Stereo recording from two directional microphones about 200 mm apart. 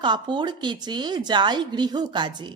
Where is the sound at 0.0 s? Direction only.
25° right (ahead or behind).